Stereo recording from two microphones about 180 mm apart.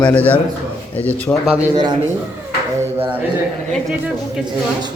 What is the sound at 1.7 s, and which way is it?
Speech, 25° right (ahead or behind).